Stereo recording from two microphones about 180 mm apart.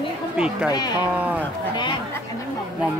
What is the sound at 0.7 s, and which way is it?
Speech, 20° left (ahead or behind).